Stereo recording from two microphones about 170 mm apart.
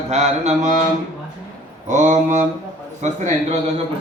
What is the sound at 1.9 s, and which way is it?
A man's voice, 45° right (ahead or behind).